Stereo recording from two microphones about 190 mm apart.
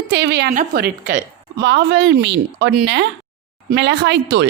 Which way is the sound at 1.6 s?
65° right (ahead or behind).